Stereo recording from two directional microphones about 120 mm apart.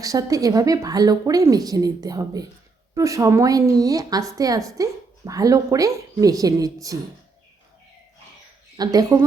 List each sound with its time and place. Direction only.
0.0 s a woman's voice: 30° right (ahead or behind)
8.7 s a woman's voice: 30° right (ahead or behind)